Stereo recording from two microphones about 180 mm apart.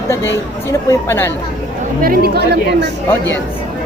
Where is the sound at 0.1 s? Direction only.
15° left (ahead or behind).